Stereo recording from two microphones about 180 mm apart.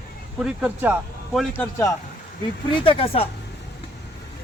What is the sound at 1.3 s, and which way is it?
Speech, 5° left (ahead or behind).